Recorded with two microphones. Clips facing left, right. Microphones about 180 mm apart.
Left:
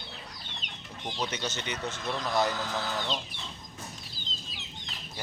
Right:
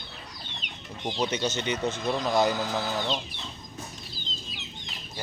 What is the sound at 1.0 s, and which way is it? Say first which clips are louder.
Speech: right 6 dB; 15° right (ahead or behind).